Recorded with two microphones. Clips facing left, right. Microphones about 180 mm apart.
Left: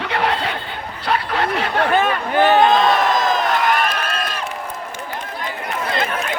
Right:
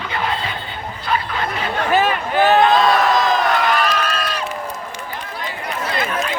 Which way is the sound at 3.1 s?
50° left (ahead or behind).